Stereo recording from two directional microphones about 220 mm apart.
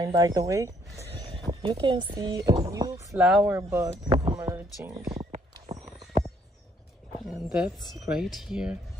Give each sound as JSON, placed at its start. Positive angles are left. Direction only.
{"t": 0.0, "sound": "speech", "side_deg": -15}
{"t": 3.2, "sound": "speech", "side_deg": 0}
{"t": 7.2, "sound": "speech", "side_deg": -5}